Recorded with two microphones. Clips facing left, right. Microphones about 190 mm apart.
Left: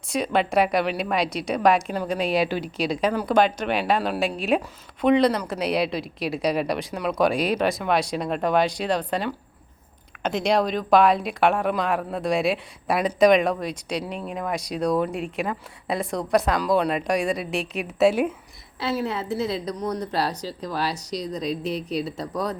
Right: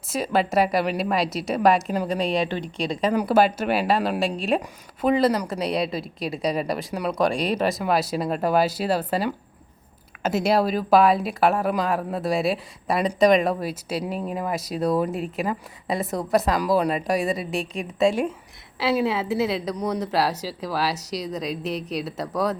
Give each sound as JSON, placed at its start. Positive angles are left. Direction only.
{"t": 0.1, "sound": "a woman's voice", "side_deg": 0}
{"t": 18.8, "sound": "a woman's voice", "side_deg": -90}
{"t": 19.5, "sound": "a woman's voice", "side_deg": 0}